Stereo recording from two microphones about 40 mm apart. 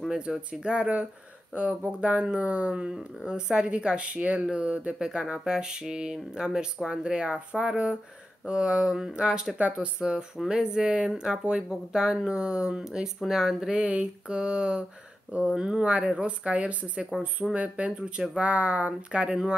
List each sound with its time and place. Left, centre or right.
0.2 s speech: right
4.9 s speech: centre
9.6 s speech: right
9.9 s speech: centre
13.7 s speech: right
19.1 s speech: centre